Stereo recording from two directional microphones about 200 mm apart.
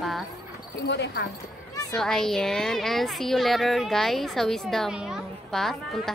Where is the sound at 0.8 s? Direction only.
60° left (ahead or behind).